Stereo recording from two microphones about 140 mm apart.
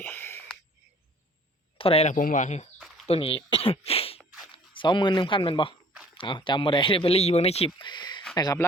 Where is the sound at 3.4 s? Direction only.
40° left (ahead or behind).